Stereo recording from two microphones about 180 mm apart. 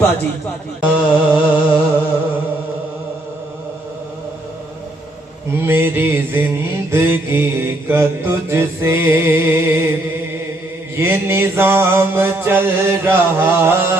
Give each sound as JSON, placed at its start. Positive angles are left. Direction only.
{"t": 0.8, "sound": "mantra", "side_deg": -10}
{"t": 5.5, "sound": "mantra", "side_deg": -10}
{"t": 10.9, "sound": "mantra", "side_deg": -15}